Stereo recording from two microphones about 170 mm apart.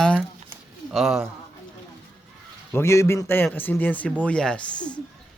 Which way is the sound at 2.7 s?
15° left (ahead or behind).